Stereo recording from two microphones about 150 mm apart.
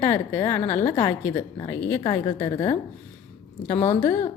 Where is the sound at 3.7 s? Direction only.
20° left (ahead or behind).